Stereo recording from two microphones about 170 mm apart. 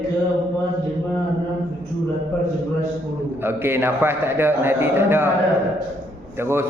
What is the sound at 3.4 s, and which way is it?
A man's voice, 15° right (ahead or behind).